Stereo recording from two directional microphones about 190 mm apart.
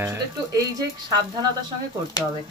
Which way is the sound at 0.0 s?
15° right (ahead or behind).